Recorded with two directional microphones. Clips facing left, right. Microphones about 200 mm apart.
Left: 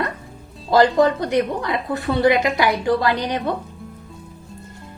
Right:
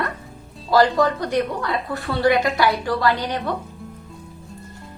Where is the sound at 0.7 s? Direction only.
20° left (ahead or behind).